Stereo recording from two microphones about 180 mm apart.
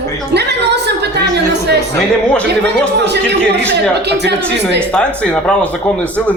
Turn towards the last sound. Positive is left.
turn(degrees=5)  # may be behind; listen again after turning